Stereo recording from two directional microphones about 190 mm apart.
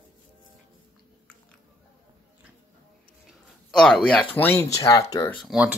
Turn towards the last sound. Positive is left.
turn(degrees=0)  # may be behind; listen again after turning